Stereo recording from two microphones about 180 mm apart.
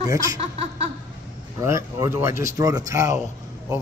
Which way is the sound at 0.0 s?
20° right (ahead or behind).